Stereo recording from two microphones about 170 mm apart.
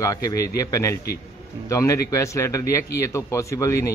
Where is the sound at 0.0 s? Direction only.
20° left (ahead or behind).